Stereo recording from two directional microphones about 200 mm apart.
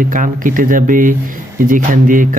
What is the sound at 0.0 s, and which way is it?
Speech, 40° right (ahead or behind).